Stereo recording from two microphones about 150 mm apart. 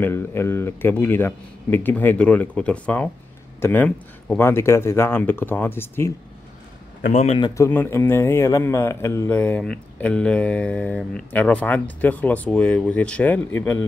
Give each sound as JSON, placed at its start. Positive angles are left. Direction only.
{"t": 0.0, "sound": "speech", "side_deg": 15}
{"t": 7.1, "sound": "a man's voice", "side_deg": 50}
{"t": 7.3, "sound": "speech", "side_deg": 25}